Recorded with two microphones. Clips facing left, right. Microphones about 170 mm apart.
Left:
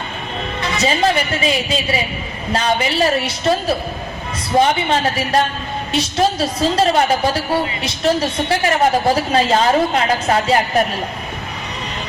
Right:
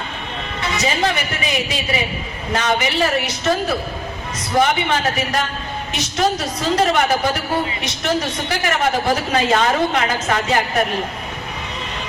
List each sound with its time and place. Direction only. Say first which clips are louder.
0.8 s a man's voice: left 4 dB; 30° left (ahead or behind)